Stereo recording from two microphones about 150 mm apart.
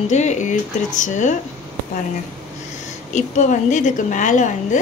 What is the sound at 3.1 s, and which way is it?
A woman's voice, 50° left (ahead or behind).